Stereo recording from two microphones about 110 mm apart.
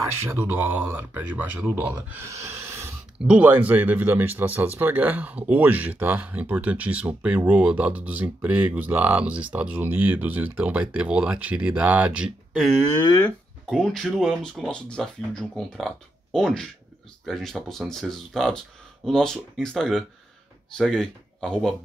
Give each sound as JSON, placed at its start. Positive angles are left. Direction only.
{"t": 0.0, "sound": "speech", "side_deg": -25}
{"t": 2.0, "sound": "dog", "side_deg": -25}
{"t": 3.2, "sound": "speech", "side_deg": -10}
{"t": 13.7, "sound": "speech", "side_deg": 0}